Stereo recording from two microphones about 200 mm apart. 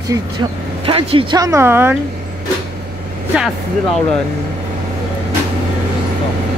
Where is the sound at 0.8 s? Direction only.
25° right (ahead or behind); by 2.0 s 10° right (ahead or behind).